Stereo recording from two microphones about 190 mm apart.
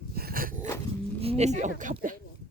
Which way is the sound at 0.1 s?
55° right (ahead or behind).